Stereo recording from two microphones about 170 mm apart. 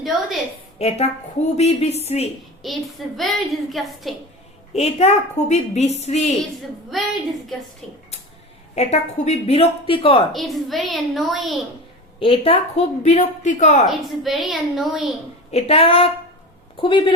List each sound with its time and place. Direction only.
0.8 s a woman's voice: 40° left (ahead or behind)
2.6 s a woman's voice: centre (ahead or behind)
4.7 s a woman's voice: 40° left (ahead or behind)
6.9 s a woman's voice: centre (ahead or behind)
8.7 s a woman's voice: 40° left (ahead or behind)
10.3 s a woman's voice: centre (ahead or behind)
12.2 s a woman's voice: 35° left (ahead or behind)
13.8 s a woman's voice: centre (ahead or behind)
15.5 s a woman's voice: 35° left (ahead or behind)